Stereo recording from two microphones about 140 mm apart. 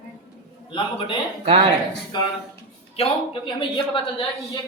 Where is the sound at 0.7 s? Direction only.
35° left (ahead or behind).